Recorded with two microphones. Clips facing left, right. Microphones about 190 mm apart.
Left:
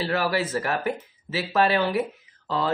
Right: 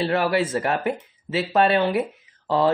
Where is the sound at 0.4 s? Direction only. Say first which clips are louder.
Right 3 dB; 25° right (ahead or behind).